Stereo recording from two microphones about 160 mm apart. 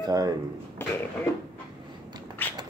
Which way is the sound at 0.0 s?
25° right (ahead or behind).